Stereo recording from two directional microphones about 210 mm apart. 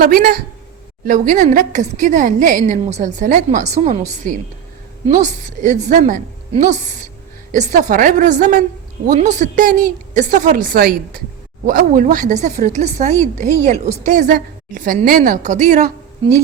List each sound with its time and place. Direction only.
0.0 s a woman's voice: 45° right (ahead or behind)